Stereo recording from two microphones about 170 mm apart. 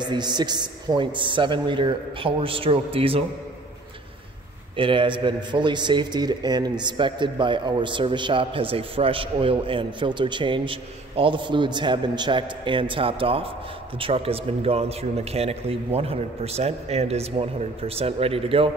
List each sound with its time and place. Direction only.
0.0 s a man's voice: 25° right (ahead or behind)
4.7 s a man's voice: 30° right (ahead or behind)